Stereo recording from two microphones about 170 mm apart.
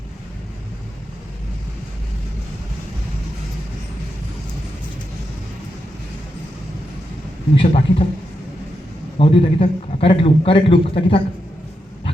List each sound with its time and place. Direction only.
7.5 s a man's voice: 35° left (ahead or behind)
9.1 s a man's voice: 35° left (ahead or behind)